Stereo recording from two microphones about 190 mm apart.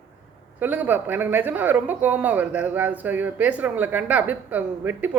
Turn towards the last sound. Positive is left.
turn(degrees=-10)  # may be behind; listen again after turning